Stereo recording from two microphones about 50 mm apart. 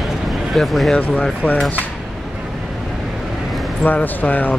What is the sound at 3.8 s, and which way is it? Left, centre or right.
Speech, left.